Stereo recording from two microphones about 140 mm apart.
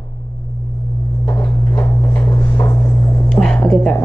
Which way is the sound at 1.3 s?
15° left (ahead or behind).